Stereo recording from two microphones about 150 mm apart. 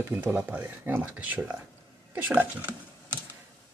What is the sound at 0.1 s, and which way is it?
Speech, 15° right (ahead or behind).